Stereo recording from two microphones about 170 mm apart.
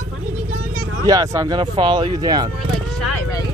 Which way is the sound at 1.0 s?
20° right (ahead or behind).